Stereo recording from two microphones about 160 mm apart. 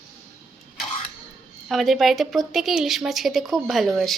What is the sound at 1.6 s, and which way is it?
A woman's voice, centre (ahead or behind).